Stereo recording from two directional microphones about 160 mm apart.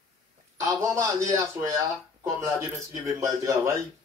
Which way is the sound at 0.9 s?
20° right (ahead or behind).